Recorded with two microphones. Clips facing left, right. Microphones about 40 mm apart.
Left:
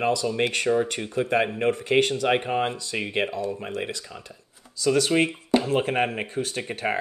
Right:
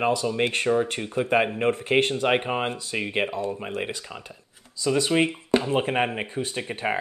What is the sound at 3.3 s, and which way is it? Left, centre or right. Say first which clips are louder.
Speech: even; right.